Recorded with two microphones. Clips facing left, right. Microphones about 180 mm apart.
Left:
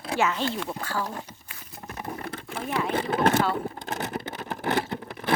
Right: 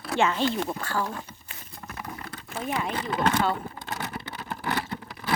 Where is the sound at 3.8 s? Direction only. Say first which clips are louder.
Left 3 dB; 45° left (ahead or behind).